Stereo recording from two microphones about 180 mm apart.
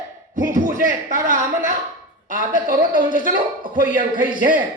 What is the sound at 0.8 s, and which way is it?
Speech, 45° right (ahead or behind).